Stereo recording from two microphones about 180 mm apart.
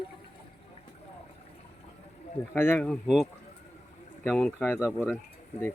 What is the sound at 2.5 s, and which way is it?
Speech, 10° left (ahead or behind).